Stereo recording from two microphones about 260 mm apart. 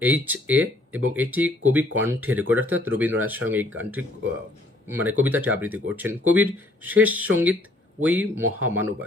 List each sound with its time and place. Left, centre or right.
0.0 s speech: centre